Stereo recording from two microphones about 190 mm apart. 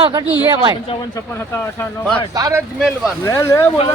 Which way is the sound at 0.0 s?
25° right (ahead or behind).